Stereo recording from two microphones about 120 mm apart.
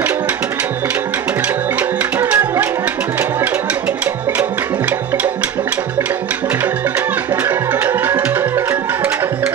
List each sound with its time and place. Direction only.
1.8 s music: 10° right (ahead or behind)
7.4 s music: 15° right (ahead or behind)